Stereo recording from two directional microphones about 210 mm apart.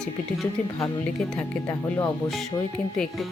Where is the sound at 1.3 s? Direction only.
10° left (ahead or behind).